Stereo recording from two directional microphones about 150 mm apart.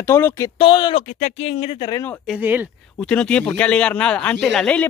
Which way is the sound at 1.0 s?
55° left (ahead or behind).